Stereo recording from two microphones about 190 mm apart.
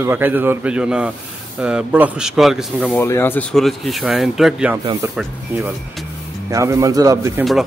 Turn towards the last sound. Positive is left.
turn(degrees=-15)  # may be behind; listen again after turning